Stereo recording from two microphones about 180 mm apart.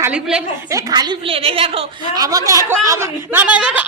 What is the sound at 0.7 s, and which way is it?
A woman's voice, 20° right (ahead or behind).